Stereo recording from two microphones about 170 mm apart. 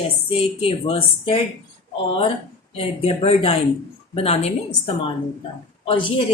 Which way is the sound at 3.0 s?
35° left (ahead or behind).